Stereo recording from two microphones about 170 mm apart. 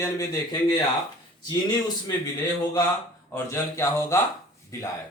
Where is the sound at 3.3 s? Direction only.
15° left (ahead or behind).